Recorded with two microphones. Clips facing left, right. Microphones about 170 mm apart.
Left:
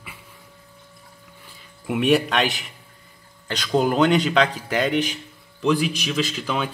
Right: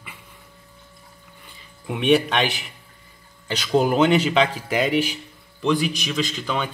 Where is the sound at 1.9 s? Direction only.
Centre (ahead or behind).